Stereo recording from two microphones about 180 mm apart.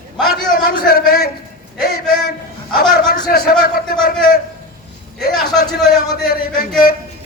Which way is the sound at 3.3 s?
60° left (ahead or behind).